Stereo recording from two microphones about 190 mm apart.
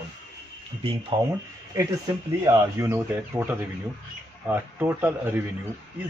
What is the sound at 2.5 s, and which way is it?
Speech, 15° right (ahead or behind).